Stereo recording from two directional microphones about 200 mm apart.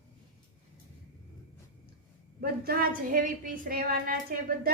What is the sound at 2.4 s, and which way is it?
A woman's voice, 45° right (ahead or behind).